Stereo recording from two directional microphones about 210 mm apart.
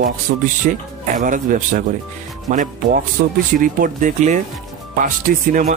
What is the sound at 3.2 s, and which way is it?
Speech, 45° right (ahead or behind).